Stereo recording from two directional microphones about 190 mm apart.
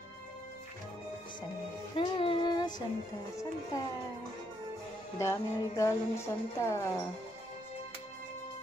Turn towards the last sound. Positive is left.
turn(degrees=15)  # may be behind; listen again after turning